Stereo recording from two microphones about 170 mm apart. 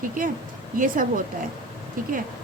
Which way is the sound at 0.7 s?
55° right (ahead or behind).